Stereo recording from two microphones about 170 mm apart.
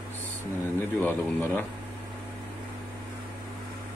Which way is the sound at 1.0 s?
10° left (ahead or behind).